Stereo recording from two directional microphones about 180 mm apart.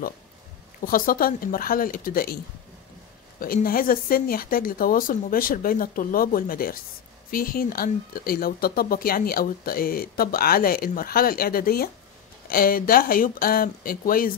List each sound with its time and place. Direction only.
0.8 s speech: 50° left (ahead or behind)